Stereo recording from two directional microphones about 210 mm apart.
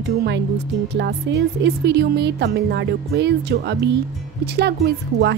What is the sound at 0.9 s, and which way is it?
A woman's voice, 55° right (ahead or behind).